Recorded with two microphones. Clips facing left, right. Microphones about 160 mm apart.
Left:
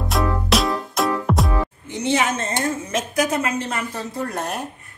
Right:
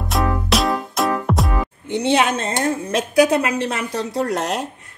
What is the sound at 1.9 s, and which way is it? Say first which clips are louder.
A woman's voice: right 4 dB; 65° right (ahead or behind).